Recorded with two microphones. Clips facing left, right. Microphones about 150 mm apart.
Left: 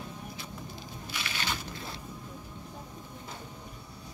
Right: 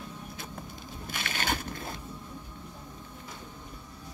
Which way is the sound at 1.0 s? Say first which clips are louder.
Right 3 dB; 50° right (ahead or behind).